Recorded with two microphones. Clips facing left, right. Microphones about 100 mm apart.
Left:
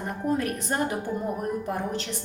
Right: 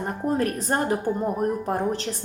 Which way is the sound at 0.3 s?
40° right (ahead or behind).